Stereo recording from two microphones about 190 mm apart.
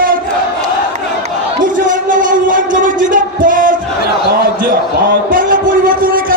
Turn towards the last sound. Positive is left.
turn(degrees=-50)  # may be behind; listen again after turning